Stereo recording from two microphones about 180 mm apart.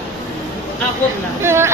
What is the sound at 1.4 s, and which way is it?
Speech, 15° right (ahead or behind).